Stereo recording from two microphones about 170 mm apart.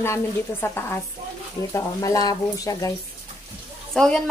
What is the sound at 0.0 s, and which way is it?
Speech, 15° left (ahead or behind).